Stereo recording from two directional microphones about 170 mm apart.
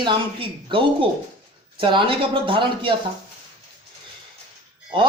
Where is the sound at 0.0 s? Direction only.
30° right (ahead or behind).